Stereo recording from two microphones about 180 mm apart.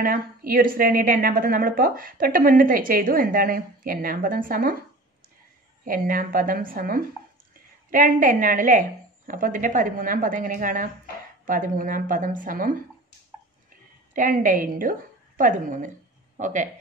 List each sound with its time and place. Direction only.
0.0 s a woman's voice: 50° right (ahead or behind)
5.9 s a woman's voice: 50° right (ahead or behind)
14.1 s a woman's voice: 50° right (ahead or behind)